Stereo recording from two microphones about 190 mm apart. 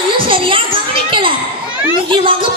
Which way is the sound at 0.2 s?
25° right (ahead or behind).